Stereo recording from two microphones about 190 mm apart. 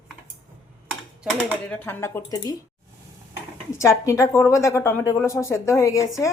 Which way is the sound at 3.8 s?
15° left (ahead or behind).